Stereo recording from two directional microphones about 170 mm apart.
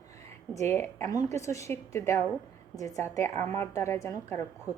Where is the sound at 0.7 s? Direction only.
15° left (ahead or behind).